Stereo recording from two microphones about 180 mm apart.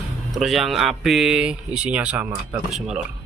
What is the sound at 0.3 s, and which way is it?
Speech, centre (ahead or behind).